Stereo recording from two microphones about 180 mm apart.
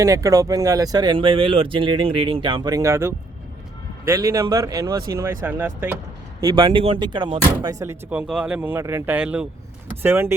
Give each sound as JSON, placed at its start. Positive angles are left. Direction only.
{"t": 0.0, "sound": "speech", "side_deg": -20}
{"t": 6.4, "sound": "speech", "side_deg": -25}